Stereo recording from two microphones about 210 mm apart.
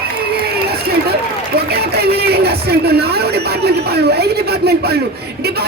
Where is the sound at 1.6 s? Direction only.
50° right (ahead or behind).